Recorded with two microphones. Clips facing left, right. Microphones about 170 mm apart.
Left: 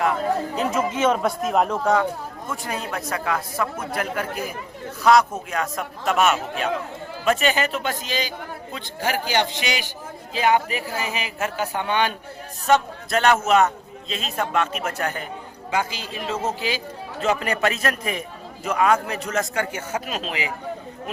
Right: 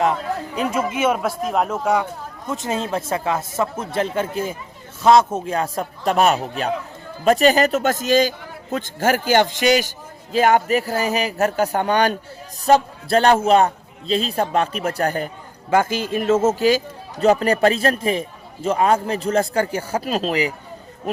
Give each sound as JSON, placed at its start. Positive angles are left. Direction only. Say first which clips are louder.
{"t": 0.6, "sound": "a man's voice", "louder": "right 3 dB", "side_deg": -10}
{"t": 2.5, "sound": "a man's voice", "louder": "right 6 dB", "side_deg": -20}
{"t": 15.7, "sound": "speech", "louder": "right 8 dB", "side_deg": -50}